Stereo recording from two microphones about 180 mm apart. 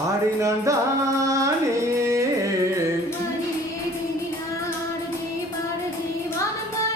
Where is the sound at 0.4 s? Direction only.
15° right (ahead or behind).